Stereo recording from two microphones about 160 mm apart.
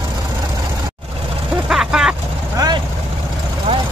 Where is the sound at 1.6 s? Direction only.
5° right (ahead or behind).